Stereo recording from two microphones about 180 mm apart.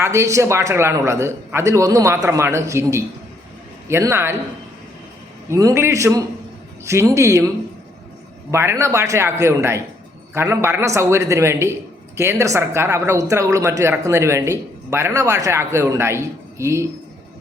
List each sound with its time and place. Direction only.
0.0 s speech: 15° right (ahead or behind)
5.5 s speech: 15° right (ahead or behind)